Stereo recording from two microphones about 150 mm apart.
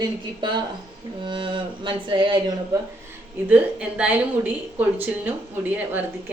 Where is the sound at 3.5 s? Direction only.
10° right (ahead or behind).